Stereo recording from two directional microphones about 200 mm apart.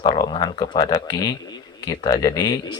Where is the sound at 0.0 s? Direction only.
20° left (ahead or behind).